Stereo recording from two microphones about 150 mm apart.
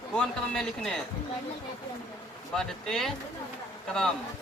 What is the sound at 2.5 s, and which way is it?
Speech, 5° left (ahead or behind).